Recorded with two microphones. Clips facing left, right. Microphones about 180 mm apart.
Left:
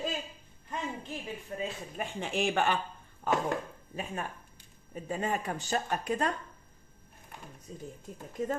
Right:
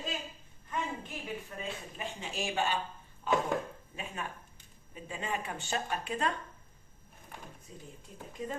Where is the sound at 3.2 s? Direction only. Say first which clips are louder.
Even; 50° left (ahead or behind).